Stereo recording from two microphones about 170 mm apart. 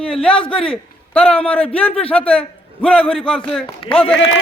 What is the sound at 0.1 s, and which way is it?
A man's voice, 5° left (ahead or behind).